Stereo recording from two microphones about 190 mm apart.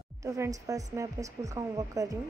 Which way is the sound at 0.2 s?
15° right (ahead or behind).